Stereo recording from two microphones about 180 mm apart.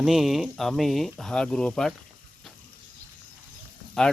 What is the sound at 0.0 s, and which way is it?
Speech, centre (ahead or behind).